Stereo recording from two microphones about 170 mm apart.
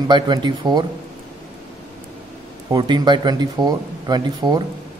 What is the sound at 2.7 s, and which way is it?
Speech, 25° right (ahead or behind).